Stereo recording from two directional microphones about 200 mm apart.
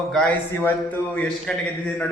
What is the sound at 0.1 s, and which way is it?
Speech, 5° left (ahead or behind).